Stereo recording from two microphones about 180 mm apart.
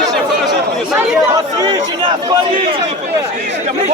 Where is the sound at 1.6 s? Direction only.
25° right (ahead or behind).